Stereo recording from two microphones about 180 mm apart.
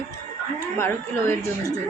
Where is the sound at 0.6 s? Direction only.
15° left (ahead or behind).